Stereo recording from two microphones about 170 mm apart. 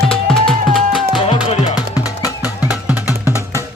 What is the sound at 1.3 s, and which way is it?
Music, 35° left (ahead or behind).